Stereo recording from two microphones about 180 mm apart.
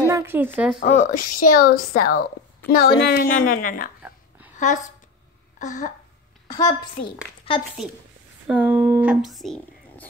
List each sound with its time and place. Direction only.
0.0 s speech: 15° right (ahead or behind)
0.7 s a woman's voice: 45° left (ahead or behind)
6.4 s a woman's voice: 20° left (ahead or behind)
8.5 s speech: 10° right (ahead or behind)